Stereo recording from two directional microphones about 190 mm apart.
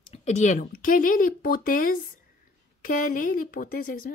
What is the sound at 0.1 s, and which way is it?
Speech, 40° left (ahead or behind).